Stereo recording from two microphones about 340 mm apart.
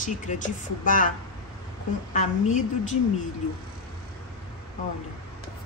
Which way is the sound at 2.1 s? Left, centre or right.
Left.